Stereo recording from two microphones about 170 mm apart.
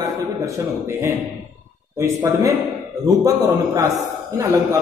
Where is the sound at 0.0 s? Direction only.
15° right (ahead or behind).